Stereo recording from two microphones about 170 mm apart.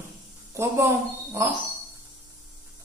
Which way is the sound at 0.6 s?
15° right (ahead or behind).